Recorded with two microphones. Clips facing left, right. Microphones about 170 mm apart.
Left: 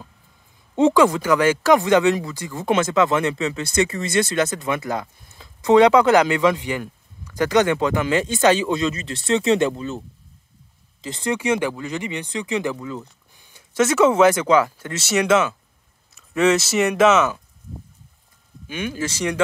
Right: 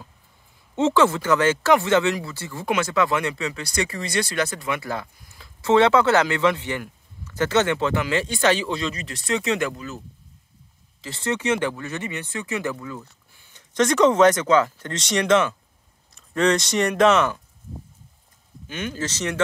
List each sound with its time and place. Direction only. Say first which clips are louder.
0.7 s speech: left 3 dB; 15° left (ahead or behind)
18.7 s speech: left 3 dB; 10° left (ahead or behind)